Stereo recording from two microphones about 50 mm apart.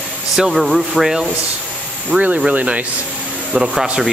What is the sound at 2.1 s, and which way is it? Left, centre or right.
Speech, right.